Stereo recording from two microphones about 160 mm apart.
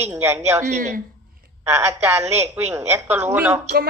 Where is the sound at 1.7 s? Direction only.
15° right (ahead or behind).